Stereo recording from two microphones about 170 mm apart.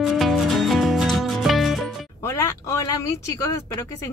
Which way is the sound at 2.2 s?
15° left (ahead or behind).